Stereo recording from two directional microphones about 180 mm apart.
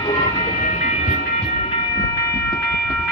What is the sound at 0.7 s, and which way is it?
Train, 45° left (ahead or behind).